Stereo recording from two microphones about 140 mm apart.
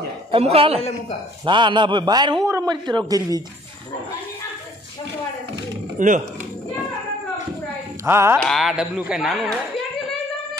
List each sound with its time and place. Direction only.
0.3 s a man's voice: 45° right (ahead or behind)
5.9 s speech: 70° right (ahead or behind)
8.0 s speech: 20° right (ahead or behind)
8.4 s speech: centre (ahead or behind)